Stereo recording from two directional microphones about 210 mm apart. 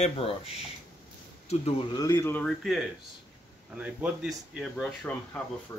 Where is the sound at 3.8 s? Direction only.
5° right (ahead or behind).